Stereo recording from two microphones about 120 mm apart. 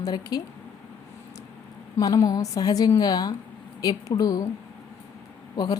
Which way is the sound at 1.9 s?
25° left (ahead or behind).